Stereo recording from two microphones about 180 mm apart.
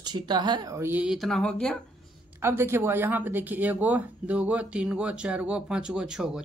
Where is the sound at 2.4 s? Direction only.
15° right (ahead or behind).